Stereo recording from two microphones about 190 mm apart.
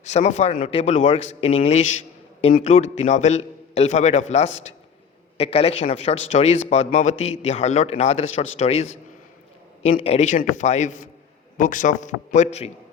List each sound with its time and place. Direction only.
0.0 s speech: 35° left (ahead or behind)
10.0 s speech: 35° left (ahead or behind)